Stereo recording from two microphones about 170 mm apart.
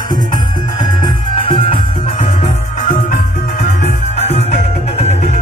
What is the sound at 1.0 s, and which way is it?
Music, 30° left (ahead or behind).